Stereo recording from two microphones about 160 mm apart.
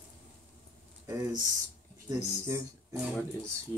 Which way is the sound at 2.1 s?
20° right (ahead or behind).